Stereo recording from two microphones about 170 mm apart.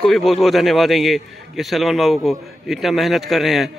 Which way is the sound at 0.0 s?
Centre (ahead or behind).